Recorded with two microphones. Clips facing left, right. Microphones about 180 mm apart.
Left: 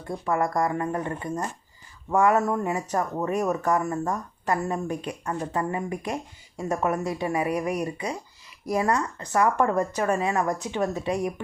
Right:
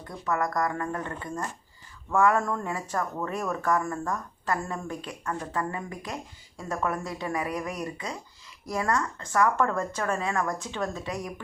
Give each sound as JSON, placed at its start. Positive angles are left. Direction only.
{"t": 0.1, "sound": "a woman's voice", "side_deg": 25}